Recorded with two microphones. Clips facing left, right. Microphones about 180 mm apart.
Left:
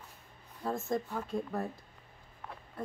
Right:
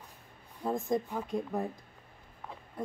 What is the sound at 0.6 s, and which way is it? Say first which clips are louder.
A woman's voice: right 3 dB; 15° right (ahead or behind).